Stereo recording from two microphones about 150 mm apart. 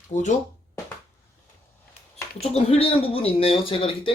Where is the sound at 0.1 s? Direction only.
55° left (ahead or behind).